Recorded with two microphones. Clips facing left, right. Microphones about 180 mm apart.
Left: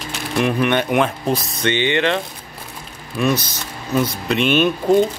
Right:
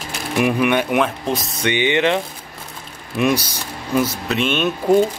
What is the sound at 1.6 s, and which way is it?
Speech, 15° right (ahead or behind).